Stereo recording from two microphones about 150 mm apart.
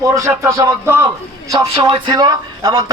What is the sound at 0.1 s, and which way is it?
A man's voice, 20° right (ahead or behind).